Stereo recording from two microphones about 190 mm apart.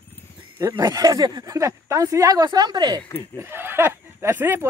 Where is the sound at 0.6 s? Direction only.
15° right (ahead or behind).